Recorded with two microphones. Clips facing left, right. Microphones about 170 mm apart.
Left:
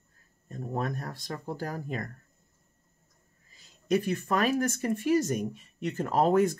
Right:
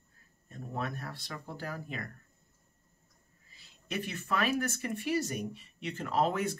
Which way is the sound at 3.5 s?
40° left (ahead or behind).